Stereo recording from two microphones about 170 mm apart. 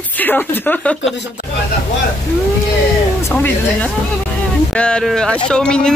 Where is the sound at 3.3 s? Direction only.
10° left (ahead or behind).